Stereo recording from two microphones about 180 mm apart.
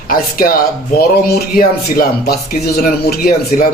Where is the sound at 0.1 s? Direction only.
55° left (ahead or behind).